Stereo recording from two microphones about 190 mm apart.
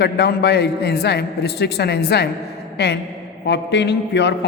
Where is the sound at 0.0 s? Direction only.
60° left (ahead or behind).